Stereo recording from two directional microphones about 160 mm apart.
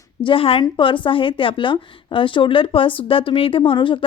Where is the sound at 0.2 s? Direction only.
35° left (ahead or behind).